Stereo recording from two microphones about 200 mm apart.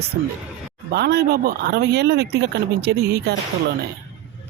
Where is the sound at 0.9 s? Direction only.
55° right (ahead or behind).